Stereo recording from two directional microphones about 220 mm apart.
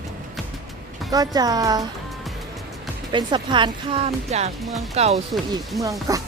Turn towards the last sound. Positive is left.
turn(degrees=-15)  # may be behind; listen again after turning